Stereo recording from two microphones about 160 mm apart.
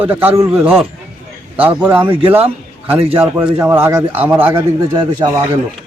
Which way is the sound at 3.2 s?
10° right (ahead or behind).